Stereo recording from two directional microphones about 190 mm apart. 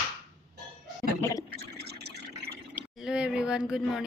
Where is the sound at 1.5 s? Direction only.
55° right (ahead or behind).